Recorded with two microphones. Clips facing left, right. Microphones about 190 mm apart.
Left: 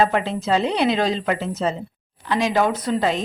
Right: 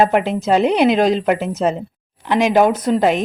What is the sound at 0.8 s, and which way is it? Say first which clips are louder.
Speech: right 6 dB; 15° right (ahead or behind).